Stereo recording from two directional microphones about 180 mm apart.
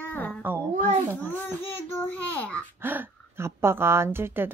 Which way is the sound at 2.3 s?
10° left (ahead or behind).